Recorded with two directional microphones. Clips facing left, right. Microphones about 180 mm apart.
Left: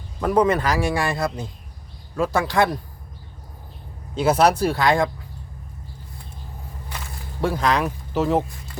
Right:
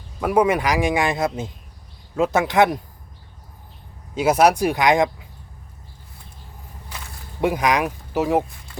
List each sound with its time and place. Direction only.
0.2 s a man's voice: 10° right (ahead or behind)
4.1 s a man's voice: 10° right (ahead or behind)
7.4 s a man's voice: 15° right (ahead or behind)